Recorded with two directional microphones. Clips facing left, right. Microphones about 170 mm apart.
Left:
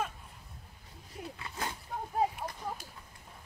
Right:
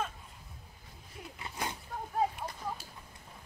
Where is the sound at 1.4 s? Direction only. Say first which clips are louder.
Right 2 dB; 20° right (ahead or behind).